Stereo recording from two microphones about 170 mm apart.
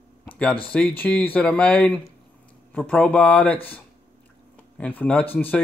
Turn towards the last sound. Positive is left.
turn(degrees=10)  # may be behind; listen again after turning